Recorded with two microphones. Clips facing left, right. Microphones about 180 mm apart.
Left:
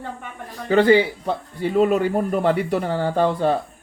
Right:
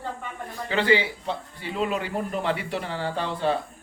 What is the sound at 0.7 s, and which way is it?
A woman's voice, 45° left (ahead or behind).